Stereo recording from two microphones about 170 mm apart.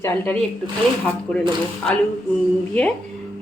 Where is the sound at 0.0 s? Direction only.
10° left (ahead or behind).